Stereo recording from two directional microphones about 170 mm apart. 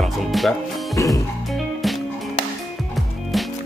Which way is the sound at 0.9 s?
20° left (ahead or behind).